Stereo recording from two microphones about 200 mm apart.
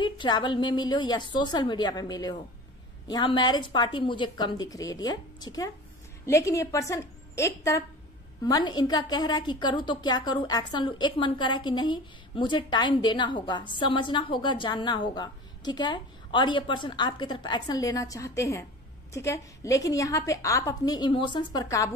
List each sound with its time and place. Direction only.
0.0 s a woman's voice: 25° left (ahead or behind)